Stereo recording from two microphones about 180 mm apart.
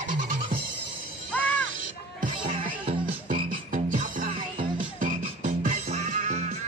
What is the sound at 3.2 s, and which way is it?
Frog, 45° right (ahead or behind).